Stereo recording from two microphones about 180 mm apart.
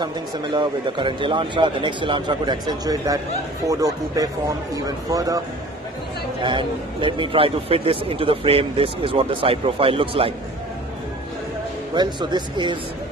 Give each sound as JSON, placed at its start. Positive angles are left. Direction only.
{"t": 0.0, "sound": "a man's voice", "side_deg": -25}
{"t": 6.4, "sound": "speech", "side_deg": -25}
{"t": 11.9, "sound": "a man's voice", "side_deg": -25}